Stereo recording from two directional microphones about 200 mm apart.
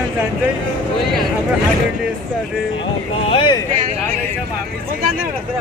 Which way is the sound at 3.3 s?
25° left (ahead or behind).